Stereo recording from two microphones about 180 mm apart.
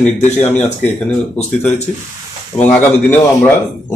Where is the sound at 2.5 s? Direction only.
30° left (ahead or behind).